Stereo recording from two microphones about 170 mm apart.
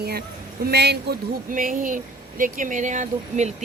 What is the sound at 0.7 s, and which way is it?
Speech, 75° right (ahead or behind).